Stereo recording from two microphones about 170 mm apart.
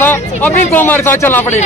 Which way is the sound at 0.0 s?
10° left (ahead or behind).